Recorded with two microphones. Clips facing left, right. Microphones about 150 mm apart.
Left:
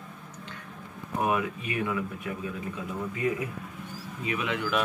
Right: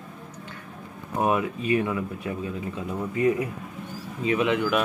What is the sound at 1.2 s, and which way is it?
Speech, 30° right (ahead or behind).